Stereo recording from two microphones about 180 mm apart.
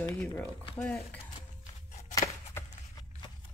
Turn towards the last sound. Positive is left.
turn(degrees=20)  # may be behind; listen again after turning